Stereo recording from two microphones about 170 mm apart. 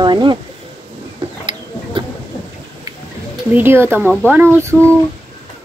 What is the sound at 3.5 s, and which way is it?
Speech, 15° right (ahead or behind).